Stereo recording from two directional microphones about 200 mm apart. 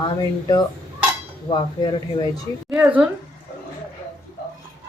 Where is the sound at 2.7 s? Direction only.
5° right (ahead or behind).